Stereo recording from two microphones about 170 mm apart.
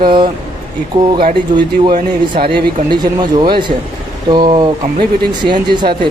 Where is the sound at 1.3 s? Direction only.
30° right (ahead or behind).